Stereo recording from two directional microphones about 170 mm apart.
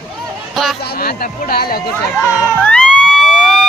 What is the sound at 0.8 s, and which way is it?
Speech, 60° left (ahead or behind).